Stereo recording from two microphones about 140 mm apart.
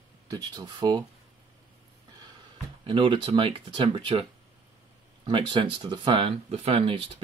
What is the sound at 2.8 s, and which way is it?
Speech, 35° right (ahead or behind).